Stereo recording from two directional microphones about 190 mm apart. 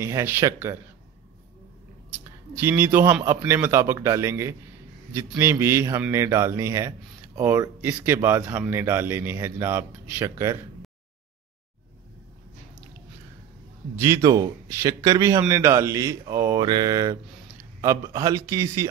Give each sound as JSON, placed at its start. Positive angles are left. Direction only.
{"t": 0.0, "sound": "a man's voice", "side_deg": -10}
{"t": 2.6, "sound": "a man's voice", "side_deg": -10}
{"t": 13.9, "sound": "a man's voice", "side_deg": -15}